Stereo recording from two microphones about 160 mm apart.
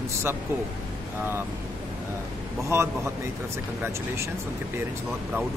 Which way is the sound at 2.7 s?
15° right (ahead or behind).